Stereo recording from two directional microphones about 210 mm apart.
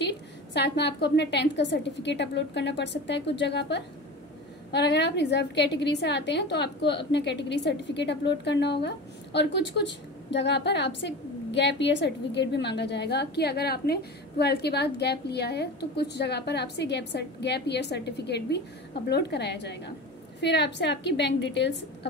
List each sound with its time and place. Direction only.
0.0 s a woman's voice: 55° left (ahead or behind)